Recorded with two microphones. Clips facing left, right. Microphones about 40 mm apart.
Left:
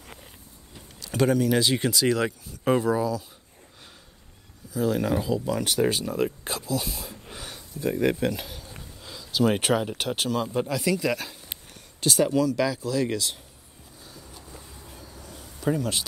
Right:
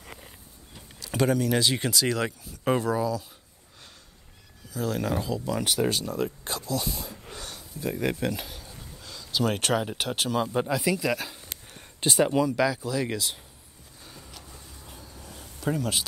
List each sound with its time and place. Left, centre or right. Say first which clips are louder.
0.7 s speech: left 2 dB; centre
4.7 s speech: left 4 dB; centre
12.0 s speech: left 1 dB; right
12.5 s speech: left 1 dB; centre
15.0 s a sound: left 1 dB; centre